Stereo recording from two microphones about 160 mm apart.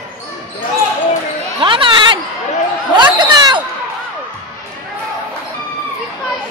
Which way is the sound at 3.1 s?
25° right (ahead or behind).